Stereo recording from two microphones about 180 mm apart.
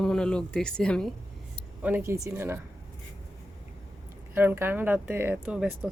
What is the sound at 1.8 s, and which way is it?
Speech, 10° right (ahead or behind).